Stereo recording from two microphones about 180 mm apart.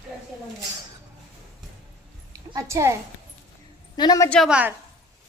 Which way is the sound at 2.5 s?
15° right (ahead or behind).